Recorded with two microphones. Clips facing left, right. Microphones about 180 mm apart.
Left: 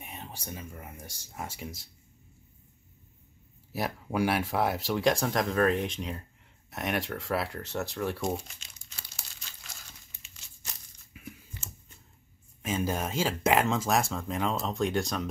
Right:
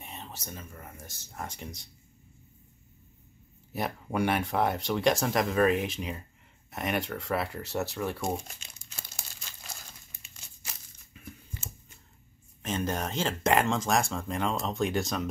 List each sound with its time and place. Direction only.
0.0 s speech: 10° left (ahead or behind)
3.7 s speech: centre (ahead or behind)
8.9 s crumpling: 50° right (ahead or behind)
11.1 s a sound: 10° left (ahead or behind)
12.6 s speech: 5° left (ahead or behind)